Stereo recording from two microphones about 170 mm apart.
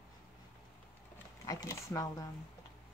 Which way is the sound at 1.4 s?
20° left (ahead or behind).